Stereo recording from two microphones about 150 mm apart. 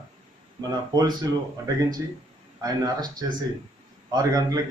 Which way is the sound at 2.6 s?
25° right (ahead or behind).